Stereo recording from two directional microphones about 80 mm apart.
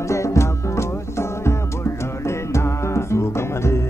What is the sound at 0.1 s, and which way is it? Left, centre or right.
Music, left.